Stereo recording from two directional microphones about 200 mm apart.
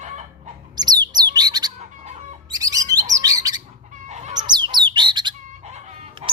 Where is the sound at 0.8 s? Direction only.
20° right (ahead or behind).